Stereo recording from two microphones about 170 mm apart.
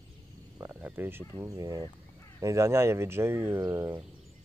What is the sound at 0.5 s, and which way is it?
Speech, 10° right (ahead or behind).